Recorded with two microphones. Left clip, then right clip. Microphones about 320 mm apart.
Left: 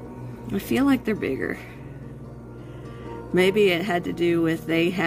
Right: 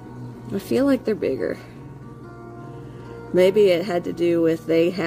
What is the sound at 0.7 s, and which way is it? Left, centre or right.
Speech, centre.